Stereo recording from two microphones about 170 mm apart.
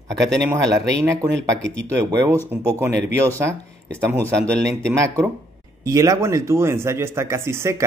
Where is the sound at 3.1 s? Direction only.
15° right (ahead or behind).